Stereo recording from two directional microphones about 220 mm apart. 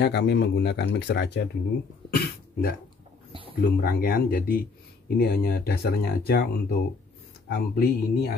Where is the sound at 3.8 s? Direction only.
45° left (ahead or behind).